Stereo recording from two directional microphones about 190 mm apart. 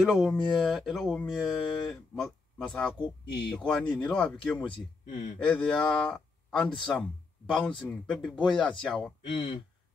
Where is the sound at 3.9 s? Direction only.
5° left (ahead or behind).